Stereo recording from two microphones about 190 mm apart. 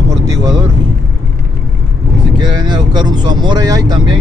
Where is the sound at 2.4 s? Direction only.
25° right (ahead or behind).